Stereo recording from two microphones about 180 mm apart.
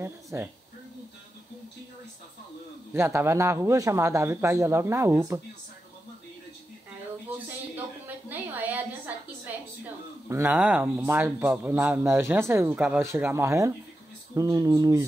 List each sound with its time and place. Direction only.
0.0 s speech: 15° right (ahead or behind)
2.9 s speech: 15° right (ahead or behind)
7.2 s a sound: 10° right (ahead or behind)
10.2 s speech: 15° right (ahead or behind)